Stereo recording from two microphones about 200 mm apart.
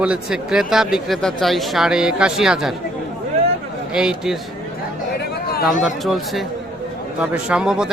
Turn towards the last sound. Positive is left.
turn(degrees=-5)  # may be behind; listen again after turning